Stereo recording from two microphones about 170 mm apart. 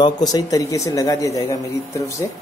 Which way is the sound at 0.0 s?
25° left (ahead or behind).